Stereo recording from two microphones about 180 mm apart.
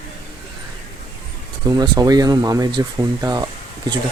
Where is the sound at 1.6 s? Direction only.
20° right (ahead or behind).